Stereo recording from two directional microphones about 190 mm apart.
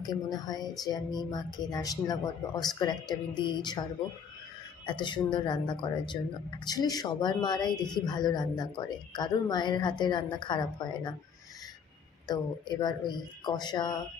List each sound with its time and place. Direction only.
0.0 s a woman's voice: 20° left (ahead or behind)
4.8 s a woman's voice: 25° left (ahead or behind)
12.3 s a woman's voice: 20° left (ahead or behind)